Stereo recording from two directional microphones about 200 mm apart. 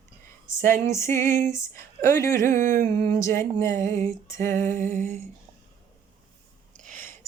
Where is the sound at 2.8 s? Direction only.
45° right (ahead or behind).